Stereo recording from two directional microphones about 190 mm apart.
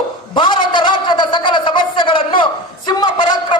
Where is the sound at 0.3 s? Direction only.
25° left (ahead or behind).